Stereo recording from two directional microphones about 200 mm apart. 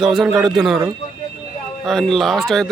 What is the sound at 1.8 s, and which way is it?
Speech, centre (ahead or behind).